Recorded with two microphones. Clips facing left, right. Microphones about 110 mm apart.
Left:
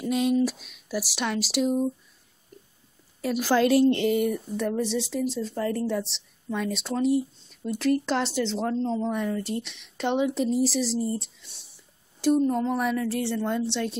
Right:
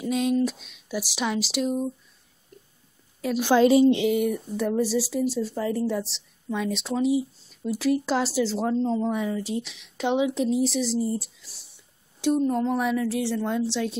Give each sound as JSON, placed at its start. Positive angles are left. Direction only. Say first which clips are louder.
{"t": 0.0, "sound": "speech", "louder": "even", "side_deg": 0}
{"t": 2.5, "sound": "a sound", "louder": "left 1 dB", "side_deg": 5}
{"t": 3.3, "sound": "a woman's voice", "louder": "right 3 dB", "side_deg": -20}
{"t": 3.6, "sound": "speech", "louder": "right 3 dB", "side_deg": -5}